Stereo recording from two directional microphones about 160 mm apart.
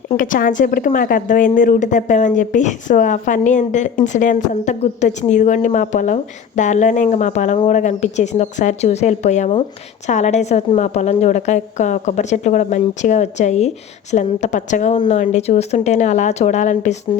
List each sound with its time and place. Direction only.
0.2 s a woman's voice: 60° left (ahead or behind)